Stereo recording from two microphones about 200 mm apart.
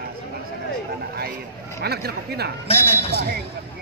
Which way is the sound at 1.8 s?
55° right (ahead or behind).